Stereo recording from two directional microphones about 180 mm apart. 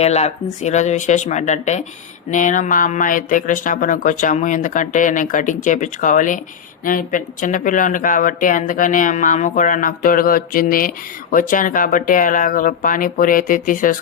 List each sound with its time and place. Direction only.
0.0 s speech: 35° left (ahead or behind)